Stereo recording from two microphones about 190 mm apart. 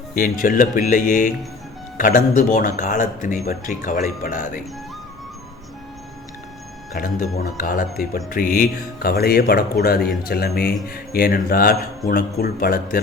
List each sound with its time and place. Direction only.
0.1 s speech: 45° left (ahead or behind)
6.9 s speech: 50° left (ahead or behind)